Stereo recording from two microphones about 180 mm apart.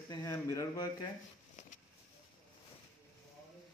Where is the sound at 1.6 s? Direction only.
45° left (ahead or behind).